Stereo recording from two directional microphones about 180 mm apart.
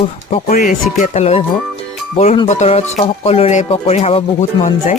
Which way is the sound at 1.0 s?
35° left (ahead or behind).